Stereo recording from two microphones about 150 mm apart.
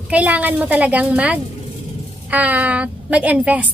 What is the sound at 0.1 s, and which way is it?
A woman's voice, 10° right (ahead or behind).